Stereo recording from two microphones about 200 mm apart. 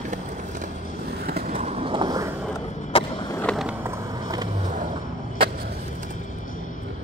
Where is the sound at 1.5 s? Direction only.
30° right (ahead or behind).